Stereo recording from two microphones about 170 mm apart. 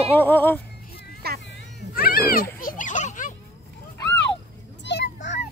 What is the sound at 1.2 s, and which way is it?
Children playing, 70° right (ahead or behind).